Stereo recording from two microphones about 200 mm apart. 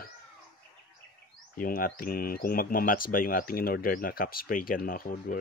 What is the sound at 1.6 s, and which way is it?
Speech, 45° left (ahead or behind).